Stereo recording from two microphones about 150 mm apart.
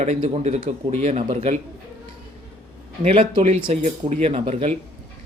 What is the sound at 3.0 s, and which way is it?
Speech, 40° right (ahead or behind).